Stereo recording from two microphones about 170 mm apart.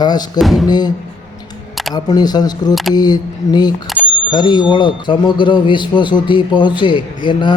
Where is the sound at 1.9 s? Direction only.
25° left (ahead or behind).